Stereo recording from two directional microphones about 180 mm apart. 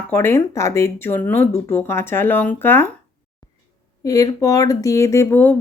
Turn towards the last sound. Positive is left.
turn(degrees=10)  # may be behind; listen again after turning